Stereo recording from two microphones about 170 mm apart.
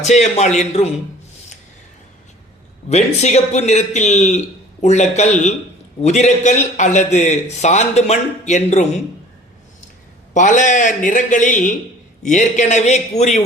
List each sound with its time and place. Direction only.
0.0 s a man's voice: 40° left (ahead or behind)
2.9 s a man's voice: 40° left (ahead or behind)
10.3 s a man's voice: 45° left (ahead or behind)